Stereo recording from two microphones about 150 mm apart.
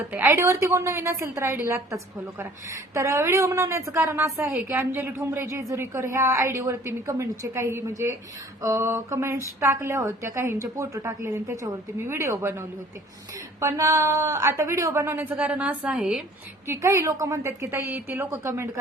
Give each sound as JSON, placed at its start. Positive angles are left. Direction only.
{"t": 0.1, "sound": "a woman's voice", "side_deg": -15}
{"t": 16.6, "sound": "a woman's voice", "side_deg": -20}